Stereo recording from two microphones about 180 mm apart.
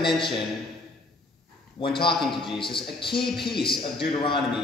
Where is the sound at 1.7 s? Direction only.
25° left (ahead or behind).